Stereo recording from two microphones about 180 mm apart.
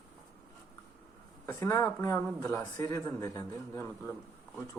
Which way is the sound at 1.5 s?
15° left (ahead or behind).